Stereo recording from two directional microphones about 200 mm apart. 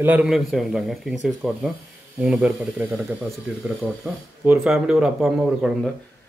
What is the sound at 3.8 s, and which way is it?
Speech, 5° left (ahead or behind).